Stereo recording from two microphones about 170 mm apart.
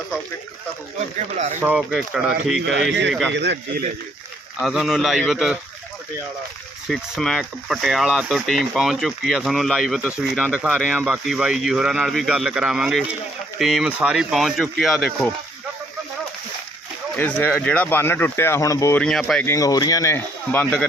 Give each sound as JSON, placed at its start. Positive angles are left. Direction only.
{"t": 1.6, "sound": "speech", "side_deg": -5}
{"t": 3.3, "sound": "speech", "side_deg": -90}
{"t": 4.6, "sound": "speech", "side_deg": 0}
{"t": 6.8, "sound": "speech", "side_deg": 0}
{"t": 17.2, "sound": "speech", "side_deg": 10}
{"t": 18.9, "sound": "speech", "side_deg": 5}
{"t": 19.5, "sound": "speech", "side_deg": 20}